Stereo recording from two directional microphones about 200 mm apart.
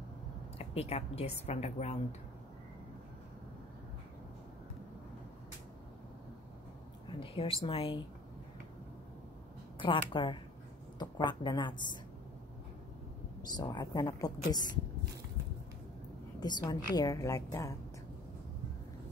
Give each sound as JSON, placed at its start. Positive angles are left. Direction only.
{"t": 0.6, "sound": "a woman's voice", "side_deg": 30}
{"t": 7.1, "sound": "a woman's voice", "side_deg": 25}
{"t": 9.8, "sound": "a woman's voice", "side_deg": 25}
{"t": 13.4, "sound": "a woman's voice", "side_deg": 20}
{"t": 16.3, "sound": "a woman's voice", "side_deg": 20}